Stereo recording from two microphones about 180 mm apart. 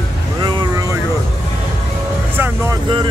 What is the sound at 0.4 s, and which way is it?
Vehicle, 25° right (ahead or behind).